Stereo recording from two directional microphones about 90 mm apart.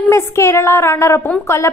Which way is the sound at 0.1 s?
30° left (ahead or behind).